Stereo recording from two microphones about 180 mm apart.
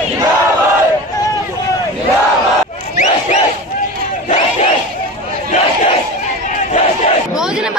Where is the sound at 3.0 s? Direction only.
40° left (ahead or behind).